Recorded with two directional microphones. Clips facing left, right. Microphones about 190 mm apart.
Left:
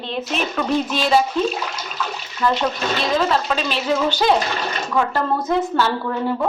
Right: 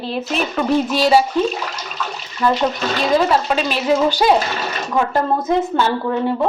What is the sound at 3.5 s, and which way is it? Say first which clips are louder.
A woman's voice: right 4 dB; 10° right (ahead or behind).